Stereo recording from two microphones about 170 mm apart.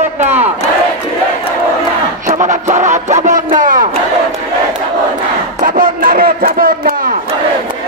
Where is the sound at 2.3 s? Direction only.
45° right (ahead or behind).